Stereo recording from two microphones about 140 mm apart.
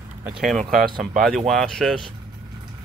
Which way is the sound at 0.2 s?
5° right (ahead or behind).